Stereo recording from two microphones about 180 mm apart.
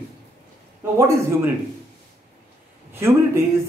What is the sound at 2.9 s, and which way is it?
Speech, 15° right (ahead or behind).